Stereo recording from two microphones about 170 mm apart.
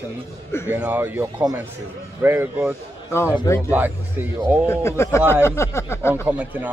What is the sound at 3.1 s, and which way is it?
Speech, 15° left (ahead or behind).